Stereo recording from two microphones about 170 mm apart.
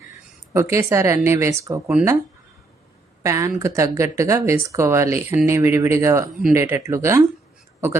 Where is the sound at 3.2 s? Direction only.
15° right (ahead or behind).